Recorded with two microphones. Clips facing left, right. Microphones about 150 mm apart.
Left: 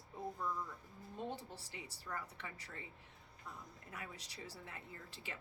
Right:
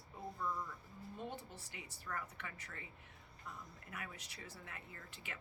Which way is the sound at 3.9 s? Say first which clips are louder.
Even; 30° left (ahead or behind).